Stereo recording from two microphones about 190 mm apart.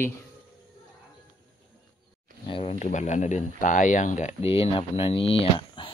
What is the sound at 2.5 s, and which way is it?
Speech, 30° left (ahead or behind).